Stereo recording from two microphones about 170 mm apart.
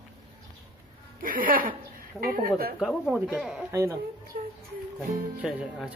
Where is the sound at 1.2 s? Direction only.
55° right (ahead or behind).